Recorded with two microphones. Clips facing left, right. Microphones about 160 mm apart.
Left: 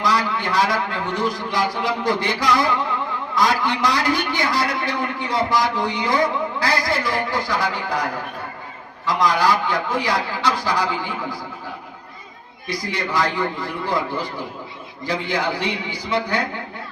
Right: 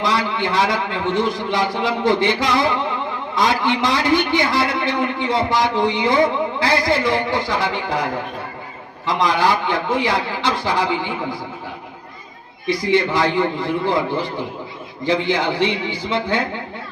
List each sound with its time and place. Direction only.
0.0 s a man's voice: 25° right (ahead or behind)
12.6 s a man's voice: 25° right (ahead or behind)